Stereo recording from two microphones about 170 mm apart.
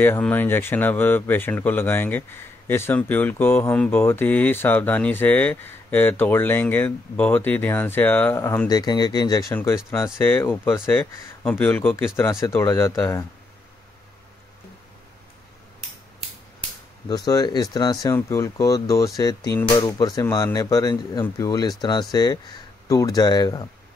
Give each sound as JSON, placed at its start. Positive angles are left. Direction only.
{"t": 0.0, "sound": "speech", "side_deg": 10}
{"t": 17.1, "sound": "speech", "side_deg": 20}